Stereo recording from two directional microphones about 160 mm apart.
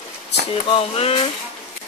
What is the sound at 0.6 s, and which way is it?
Speech, 35° left (ahead or behind).